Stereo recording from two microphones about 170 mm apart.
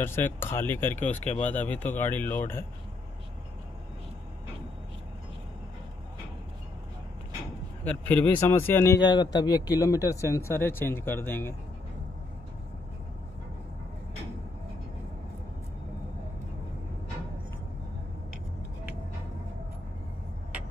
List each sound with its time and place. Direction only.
0.0 s a man's voice: 15° left (ahead or behind)
1.2 s speech: 40° left (ahead or behind)
1.5 s a man's voice: 10° left (ahead or behind)
7.8 s a man's voice: 10° left (ahead or behind)